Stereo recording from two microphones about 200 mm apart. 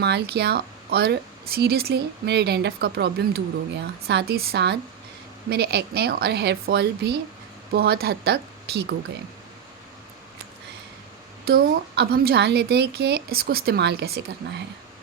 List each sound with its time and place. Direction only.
0.0 s speech: 55° right (ahead or behind)
11.4 s speech: 50° right (ahead or behind)